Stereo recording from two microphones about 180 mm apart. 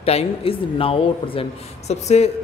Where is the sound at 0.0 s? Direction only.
35° left (ahead or behind).